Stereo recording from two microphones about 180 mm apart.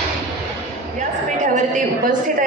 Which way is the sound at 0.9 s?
45° right (ahead or behind).